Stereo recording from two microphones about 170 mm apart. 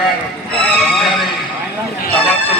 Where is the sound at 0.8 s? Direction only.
Centre (ahead or behind).